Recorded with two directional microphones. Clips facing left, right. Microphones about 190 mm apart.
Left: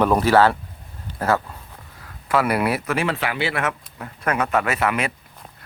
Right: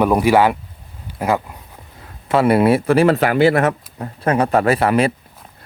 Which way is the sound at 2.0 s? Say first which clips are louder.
Right 5 dB; 25° right (ahead or behind).